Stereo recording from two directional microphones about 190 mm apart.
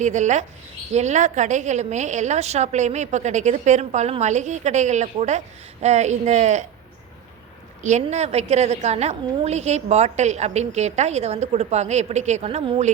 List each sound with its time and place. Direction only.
0.0 s a woman's voice: 40° right (ahead or behind)
7.8 s a woman's voice: 40° right (ahead or behind)